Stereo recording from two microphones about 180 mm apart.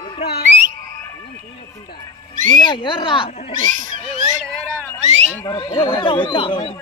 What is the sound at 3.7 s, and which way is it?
Cat, 45° right (ahead or behind).